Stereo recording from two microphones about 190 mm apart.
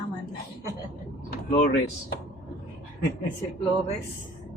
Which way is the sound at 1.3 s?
55° left (ahead or behind).